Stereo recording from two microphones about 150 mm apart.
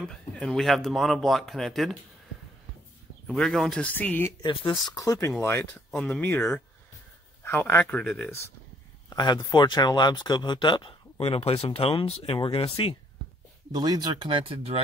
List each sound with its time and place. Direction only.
0.0 s speech: 5° left (ahead or behind)
3.3 s speech: centre (ahead or behind)
4.4 s speech: 30° left (ahead or behind); by 8.5 s 15° left (ahead or behind)
9.1 s speech: 30° left (ahead or behind)
13.7 s speech: 25° right (ahead or behind)